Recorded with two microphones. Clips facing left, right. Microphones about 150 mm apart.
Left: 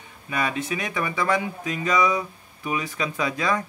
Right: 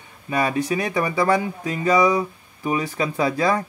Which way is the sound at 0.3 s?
35° right (ahead or behind).